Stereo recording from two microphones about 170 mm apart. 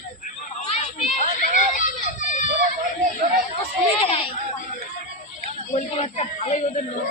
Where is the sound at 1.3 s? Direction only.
50° left (ahead or behind).